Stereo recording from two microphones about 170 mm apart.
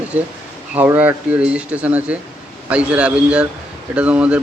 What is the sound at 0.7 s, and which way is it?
A man's voice, 10° right (ahead or behind).